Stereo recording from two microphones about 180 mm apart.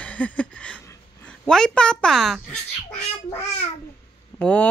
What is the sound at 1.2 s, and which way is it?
A woman's voice, 5° left (ahead or behind).